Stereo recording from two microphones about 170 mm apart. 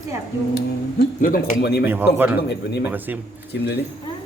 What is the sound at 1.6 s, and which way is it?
Speech, 75° left (ahead or behind).